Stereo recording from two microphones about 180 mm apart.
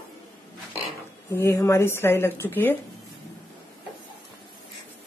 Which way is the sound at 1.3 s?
15° left (ahead or behind).